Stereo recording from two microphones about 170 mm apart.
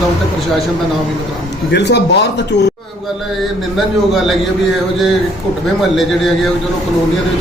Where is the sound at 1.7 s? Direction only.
90° left.